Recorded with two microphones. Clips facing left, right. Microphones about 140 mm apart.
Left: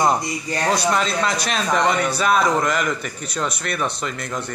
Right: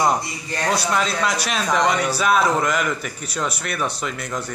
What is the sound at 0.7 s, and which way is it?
A man's voice, 5° right (ahead or behind).